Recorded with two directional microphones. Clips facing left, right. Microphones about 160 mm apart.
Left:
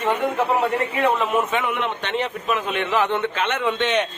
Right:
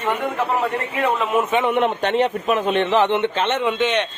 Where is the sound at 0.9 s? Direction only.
Centre (ahead or behind).